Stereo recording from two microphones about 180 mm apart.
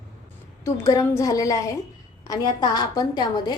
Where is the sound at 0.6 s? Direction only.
15° left (ahead or behind).